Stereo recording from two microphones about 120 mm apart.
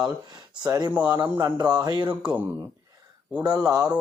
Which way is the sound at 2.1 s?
15° right (ahead or behind).